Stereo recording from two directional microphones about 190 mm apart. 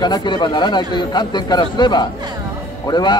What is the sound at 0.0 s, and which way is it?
A man's voice, 25° left (ahead or behind).